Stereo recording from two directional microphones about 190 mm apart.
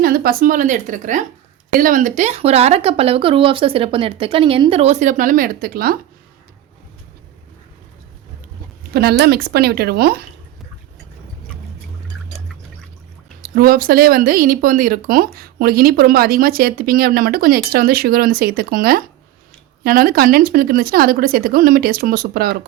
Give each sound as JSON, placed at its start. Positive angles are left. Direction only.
{"t": 0.0, "sound": "speech", "side_deg": -50}
{"t": 8.9, "sound": "speech", "side_deg": -55}
{"t": 13.4, "sound": "speech", "side_deg": -50}